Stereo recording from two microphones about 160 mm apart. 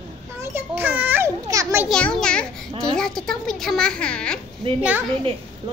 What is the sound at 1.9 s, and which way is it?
Speech, 5° left (ahead or behind).